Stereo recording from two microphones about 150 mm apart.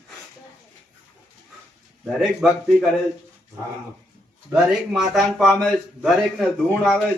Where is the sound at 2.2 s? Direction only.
Centre (ahead or behind).